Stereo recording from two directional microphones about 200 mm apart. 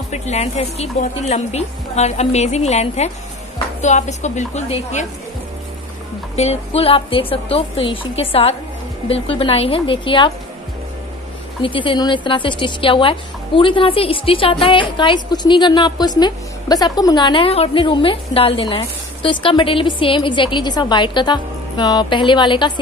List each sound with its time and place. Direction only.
0.1 s a woman's voice: 35° left (ahead or behind)
6.3 s a woman's voice: 30° left (ahead or behind)
11.6 s a woman's voice: 25° left (ahead or behind)